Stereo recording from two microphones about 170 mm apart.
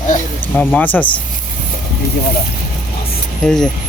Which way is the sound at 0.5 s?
10° left (ahead or behind).